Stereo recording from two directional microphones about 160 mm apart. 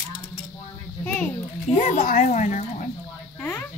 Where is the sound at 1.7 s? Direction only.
55° left (ahead or behind).